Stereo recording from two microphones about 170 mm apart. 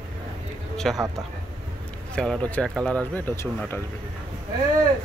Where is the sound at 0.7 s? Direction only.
Centre (ahead or behind).